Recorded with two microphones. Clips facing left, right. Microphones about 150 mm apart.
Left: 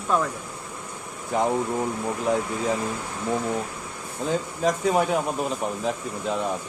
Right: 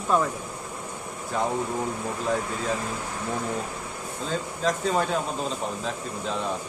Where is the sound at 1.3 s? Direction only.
15° left (ahead or behind).